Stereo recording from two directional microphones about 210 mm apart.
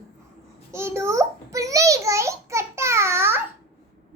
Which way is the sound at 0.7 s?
10° right (ahead or behind).